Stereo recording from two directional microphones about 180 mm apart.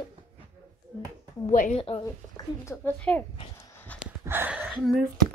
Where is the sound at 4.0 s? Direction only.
10° right (ahead or behind).